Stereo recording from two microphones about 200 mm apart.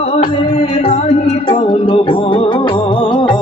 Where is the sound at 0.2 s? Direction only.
30° left (ahead or behind).